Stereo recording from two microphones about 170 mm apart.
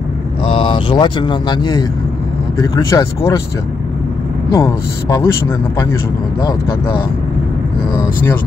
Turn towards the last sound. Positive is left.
turn(degrees=25)  # may be behind; listen again after turning